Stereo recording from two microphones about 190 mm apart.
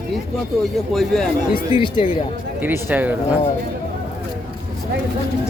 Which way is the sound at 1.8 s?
25° left (ahead or behind).